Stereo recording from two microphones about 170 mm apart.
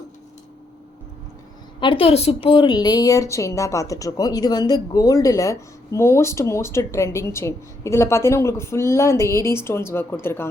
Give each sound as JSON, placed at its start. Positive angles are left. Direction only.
{"t": 1.8, "sound": "a woman's voice", "side_deg": 30}